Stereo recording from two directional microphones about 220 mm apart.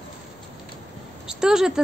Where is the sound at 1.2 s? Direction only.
Centre (ahead or behind).